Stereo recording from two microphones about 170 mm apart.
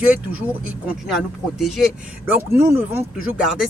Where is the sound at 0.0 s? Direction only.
10° right (ahead or behind).